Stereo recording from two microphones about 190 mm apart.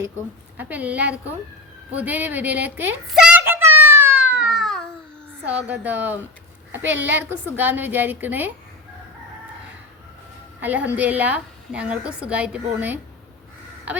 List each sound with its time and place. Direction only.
0.5 s a woman's voice: 10° right (ahead or behind)
2.0 s a sound: 10° right (ahead or behind)
4.2 s a sound: 70° right (ahead or behind)
4.4 s babbling: centre (ahead or behind)
5.6 s a woman's voice: 10° right (ahead or behind)
10.6 s a woman's voice: 10° right (ahead or behind)